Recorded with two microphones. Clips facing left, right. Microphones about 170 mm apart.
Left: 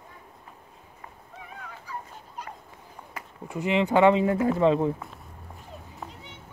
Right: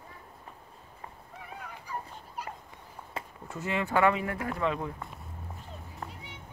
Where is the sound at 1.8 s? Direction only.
10° right (ahead or behind).